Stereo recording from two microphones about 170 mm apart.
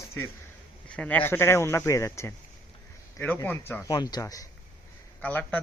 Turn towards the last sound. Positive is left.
turn(degrees=10)  # may be behind; listen again after turning